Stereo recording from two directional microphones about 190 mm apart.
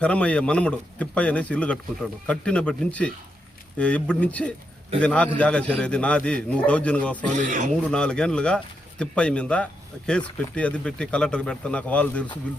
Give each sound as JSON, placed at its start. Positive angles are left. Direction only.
{"t": 0.0, "sound": "speech", "side_deg": 5}
{"t": 7.3, "sound": "a man's voice", "side_deg": -40}
{"t": 7.7, "sound": "speech", "side_deg": 5}